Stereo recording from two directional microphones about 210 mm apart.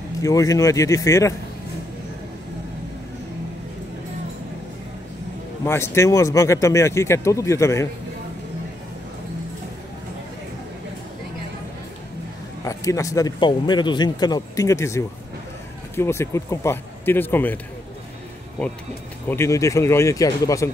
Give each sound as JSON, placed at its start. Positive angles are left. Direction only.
{"t": 0.2, "sound": "speech", "side_deg": 15}
{"t": 5.7, "sound": "speech", "side_deg": 10}
{"t": 12.6, "sound": "speech", "side_deg": 15}
{"t": 19.2, "sound": "speech", "side_deg": 10}